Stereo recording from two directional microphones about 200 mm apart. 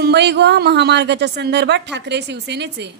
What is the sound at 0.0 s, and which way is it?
A woman's voice, 55° right (ahead or behind).